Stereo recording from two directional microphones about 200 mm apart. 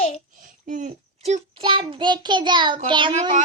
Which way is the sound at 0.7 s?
35° right (ahead or behind).